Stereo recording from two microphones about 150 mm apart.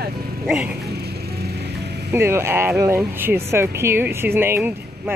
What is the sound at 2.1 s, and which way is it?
Speech, 15° right (ahead or behind).